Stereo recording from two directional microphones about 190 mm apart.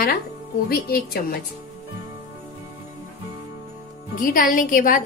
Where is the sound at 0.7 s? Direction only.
55° left (ahead or behind).